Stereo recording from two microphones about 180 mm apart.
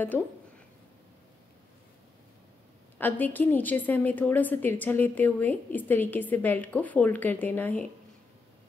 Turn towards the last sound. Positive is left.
turn(degrees=10)  # may be behind; listen again after turning